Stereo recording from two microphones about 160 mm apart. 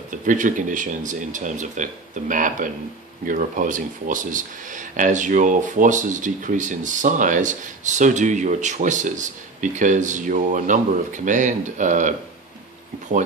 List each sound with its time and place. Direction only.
0.1 s speech: 55° right (ahead or behind)